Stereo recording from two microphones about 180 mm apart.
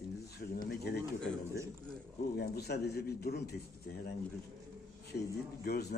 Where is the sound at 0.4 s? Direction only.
50° left (ahead or behind).